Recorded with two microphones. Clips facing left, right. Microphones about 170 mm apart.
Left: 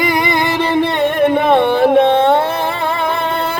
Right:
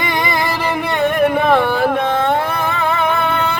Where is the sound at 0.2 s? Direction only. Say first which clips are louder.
Left 3 dB; 25° left (ahead or behind).